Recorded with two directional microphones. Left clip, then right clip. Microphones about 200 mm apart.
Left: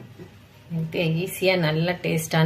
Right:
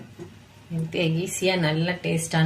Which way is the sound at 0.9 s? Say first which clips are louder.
Even; 5° left (ahead or behind).